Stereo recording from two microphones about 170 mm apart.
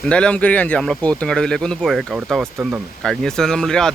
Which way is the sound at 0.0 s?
5° left (ahead or behind).